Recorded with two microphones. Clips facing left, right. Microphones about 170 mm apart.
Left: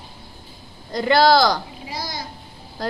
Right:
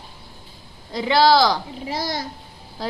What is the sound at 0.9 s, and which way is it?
Speech, centre (ahead or behind).